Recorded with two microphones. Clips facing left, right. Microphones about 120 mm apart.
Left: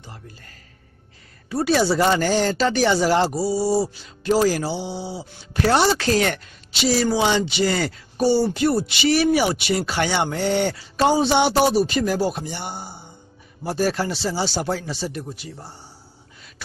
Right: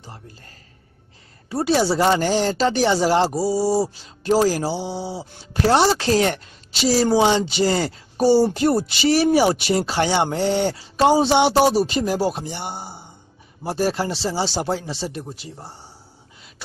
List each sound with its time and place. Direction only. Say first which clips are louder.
1.5 s speech: even; 25° right (ahead or behind)
6.7 s speech: right 2 dB; 40° right (ahead or behind)
8.2 s speech: right 3 dB; 40° right (ahead or behind)